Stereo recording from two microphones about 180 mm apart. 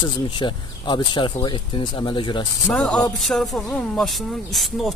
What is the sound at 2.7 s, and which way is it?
A man's voice, 5° left (ahead or behind).